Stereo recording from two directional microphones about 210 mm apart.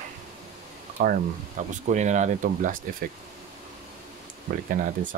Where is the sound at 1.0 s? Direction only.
45° right (ahead or behind).